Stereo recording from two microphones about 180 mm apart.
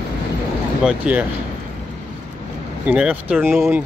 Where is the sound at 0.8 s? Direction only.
5° right (ahead or behind).